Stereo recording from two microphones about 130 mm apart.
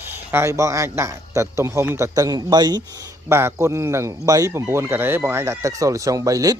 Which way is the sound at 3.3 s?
20° right (ahead or behind).